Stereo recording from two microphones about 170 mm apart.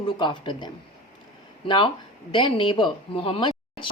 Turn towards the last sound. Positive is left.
turn(degrees=30)  # may be behind; listen again after turning